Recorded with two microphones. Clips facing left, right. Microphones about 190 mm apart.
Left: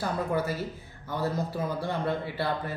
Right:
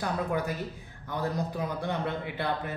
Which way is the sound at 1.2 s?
5° left (ahead or behind).